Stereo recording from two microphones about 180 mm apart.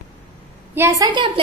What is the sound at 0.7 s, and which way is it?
Speech, 15° right (ahead or behind).